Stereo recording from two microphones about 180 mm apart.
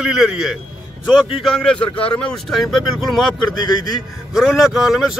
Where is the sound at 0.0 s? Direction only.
5° right (ahead or behind).